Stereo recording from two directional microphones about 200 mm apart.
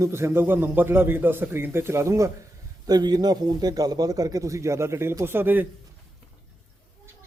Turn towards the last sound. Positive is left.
turn(degrees=-10)  # may be behind; listen again after turning